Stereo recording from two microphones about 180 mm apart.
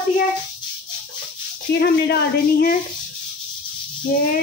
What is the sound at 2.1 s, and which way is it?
Speech, 55° left (ahead or behind).